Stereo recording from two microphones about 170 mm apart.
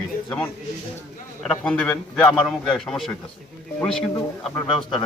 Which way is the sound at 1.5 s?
5° left (ahead or behind).